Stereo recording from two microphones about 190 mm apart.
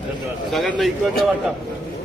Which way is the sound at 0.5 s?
Centre (ahead or behind).